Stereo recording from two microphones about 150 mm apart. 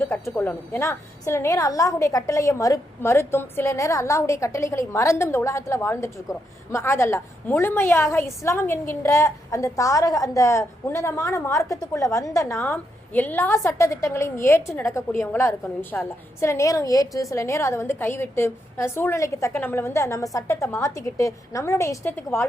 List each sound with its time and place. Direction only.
0.0 s a woman's voice: 15° left (ahead or behind)